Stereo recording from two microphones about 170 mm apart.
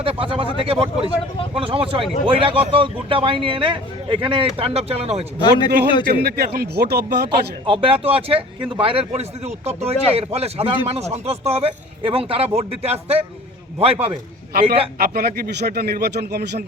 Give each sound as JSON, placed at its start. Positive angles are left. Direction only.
{"t": 0.0, "sound": "speech", "side_deg": -35}
{"t": 5.4, "sound": "speech", "side_deg": 25}
{"t": 6.2, "sound": "speech", "side_deg": -70}
{"t": 7.7, "sound": "speech", "side_deg": -30}
{"t": 14.9, "sound": "speech", "side_deg": -65}